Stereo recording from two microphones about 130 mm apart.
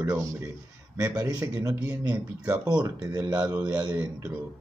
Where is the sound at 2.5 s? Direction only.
30° right (ahead or behind).